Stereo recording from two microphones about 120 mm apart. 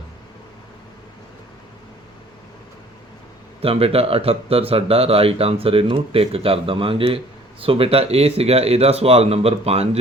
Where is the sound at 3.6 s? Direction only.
55° right (ahead or behind).